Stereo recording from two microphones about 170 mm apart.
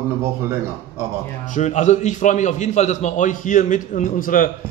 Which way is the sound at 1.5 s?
45° left (ahead or behind).